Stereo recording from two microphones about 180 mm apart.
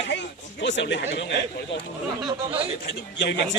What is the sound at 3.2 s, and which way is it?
Speech, 70° left (ahead or behind).